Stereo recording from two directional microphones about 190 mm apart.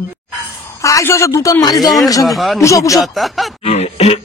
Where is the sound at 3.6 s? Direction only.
35° left (ahead or behind).